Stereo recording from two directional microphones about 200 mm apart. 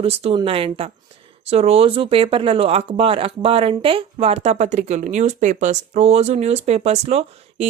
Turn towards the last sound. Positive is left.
turn(degrees=-30)  # may be behind; listen again after turning